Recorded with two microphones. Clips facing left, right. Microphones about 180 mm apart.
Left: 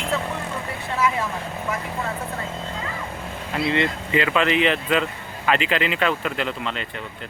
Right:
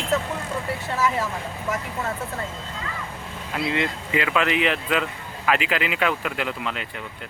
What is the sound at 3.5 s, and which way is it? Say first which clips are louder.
Speech: left 3 dB; centre (ahead or behind).